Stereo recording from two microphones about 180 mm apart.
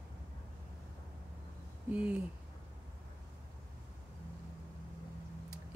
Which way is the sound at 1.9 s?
5° right (ahead or behind).